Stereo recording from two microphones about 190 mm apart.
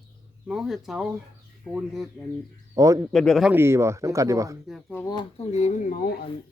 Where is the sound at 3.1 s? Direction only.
Centre (ahead or behind); by 4.6 s 15° right (ahead or behind).